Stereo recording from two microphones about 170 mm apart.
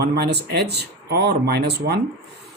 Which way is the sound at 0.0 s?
70° right (ahead or behind).